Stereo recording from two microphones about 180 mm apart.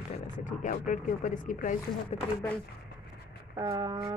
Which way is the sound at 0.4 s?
45° left (ahead or behind).